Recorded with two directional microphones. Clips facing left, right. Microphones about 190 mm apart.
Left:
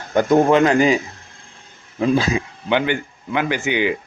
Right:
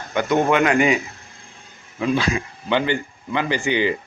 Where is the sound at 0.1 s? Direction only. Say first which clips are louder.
Left 5 dB; 40° left (ahead or behind).